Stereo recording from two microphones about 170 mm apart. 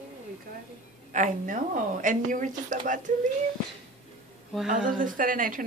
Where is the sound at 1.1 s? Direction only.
50° right (ahead or behind).